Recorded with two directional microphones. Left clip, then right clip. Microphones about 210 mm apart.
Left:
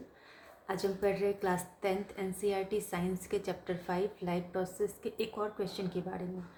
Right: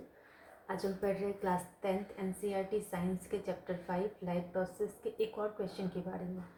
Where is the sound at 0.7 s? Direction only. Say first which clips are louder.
Left 3 dB; 50° left (ahead or behind).